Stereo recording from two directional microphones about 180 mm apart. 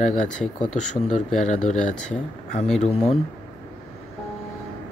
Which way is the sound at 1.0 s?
40° left (ahead or behind).